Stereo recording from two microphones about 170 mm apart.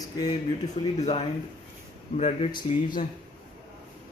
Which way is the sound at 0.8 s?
30° left (ahead or behind).